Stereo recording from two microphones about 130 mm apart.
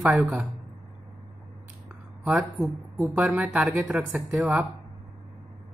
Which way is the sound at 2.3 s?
Centre (ahead or behind).